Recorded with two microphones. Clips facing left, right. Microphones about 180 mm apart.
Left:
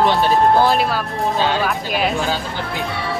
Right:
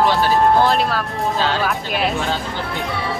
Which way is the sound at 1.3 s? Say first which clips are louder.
Left 2 dB; 15° left (ahead or behind).